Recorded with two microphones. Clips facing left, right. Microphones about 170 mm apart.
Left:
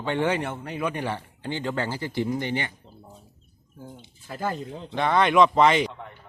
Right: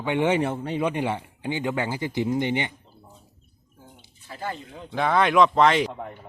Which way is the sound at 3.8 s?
45° left (ahead or behind).